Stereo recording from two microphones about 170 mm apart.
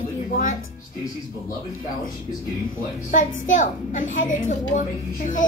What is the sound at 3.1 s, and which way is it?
A woman's voice, 50° left (ahead or behind).